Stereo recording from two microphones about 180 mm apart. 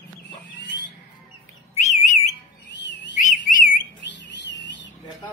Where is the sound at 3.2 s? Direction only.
45° left (ahead or behind).